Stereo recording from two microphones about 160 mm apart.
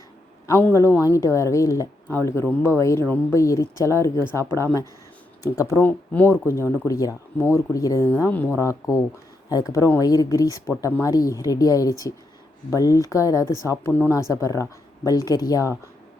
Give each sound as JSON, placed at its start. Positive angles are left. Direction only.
{"t": 0.4, "sound": "speech", "side_deg": 15}